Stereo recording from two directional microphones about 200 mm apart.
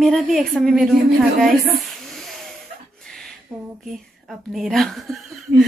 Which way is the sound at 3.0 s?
5° left (ahead or behind).